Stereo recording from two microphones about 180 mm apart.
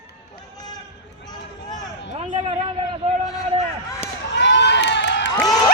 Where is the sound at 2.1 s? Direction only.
35° right (ahead or behind).